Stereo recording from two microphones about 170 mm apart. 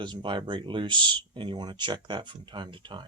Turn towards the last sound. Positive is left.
turn(degrees=-25)  # may be behind; listen again after turning